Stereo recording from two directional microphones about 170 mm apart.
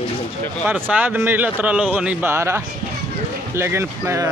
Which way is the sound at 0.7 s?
10° right (ahead or behind).